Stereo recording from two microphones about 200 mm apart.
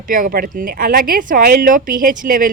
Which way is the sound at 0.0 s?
45° right (ahead or behind).